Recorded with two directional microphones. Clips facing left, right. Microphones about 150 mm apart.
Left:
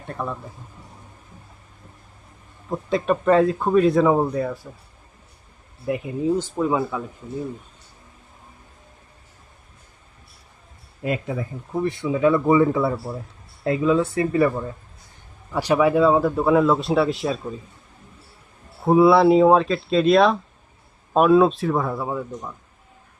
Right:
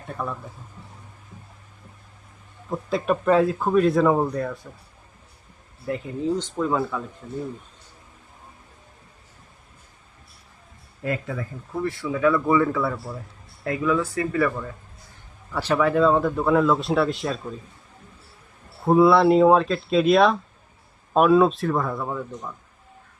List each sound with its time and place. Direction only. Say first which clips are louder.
0.1 s a man's voice: left 1 dB; centre (ahead or behind)
2.6 s a man's voice: left 2 dB; centre (ahead or behind)
5.9 s speech: left 3 dB; 10° left (ahead or behind)
11.0 s speech: left 2 dB; 20° left (ahead or behind)
15.5 s a man's voice: left 3 dB; 15° left (ahead or behind)
18.9 s a man's voice: left 2 dB; centre (ahead or behind)